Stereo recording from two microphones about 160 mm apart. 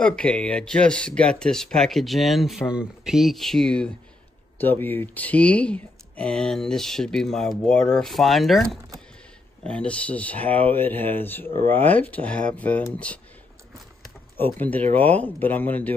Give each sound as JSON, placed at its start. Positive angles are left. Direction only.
{"t": 0.0, "sound": "speech", "side_deg": 5}
{"t": 14.3, "sound": "speech", "side_deg": 10}